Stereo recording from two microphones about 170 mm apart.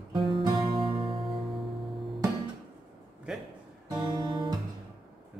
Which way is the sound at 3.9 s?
25° right (ahead or behind).